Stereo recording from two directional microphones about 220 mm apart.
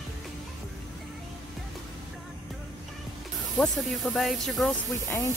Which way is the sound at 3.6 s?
Centre (ahead or behind).